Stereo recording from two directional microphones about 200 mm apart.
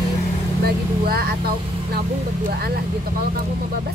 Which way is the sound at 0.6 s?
50° right (ahead or behind).